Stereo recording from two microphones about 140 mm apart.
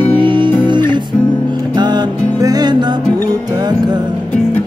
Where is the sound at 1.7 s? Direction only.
30° right (ahead or behind).